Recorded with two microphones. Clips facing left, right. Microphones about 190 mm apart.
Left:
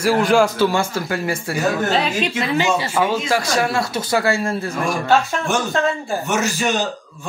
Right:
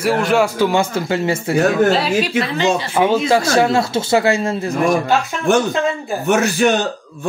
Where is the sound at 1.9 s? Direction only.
5° right (ahead or behind).